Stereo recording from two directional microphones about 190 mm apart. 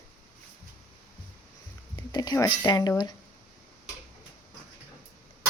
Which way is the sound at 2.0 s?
20° left (ahead or behind).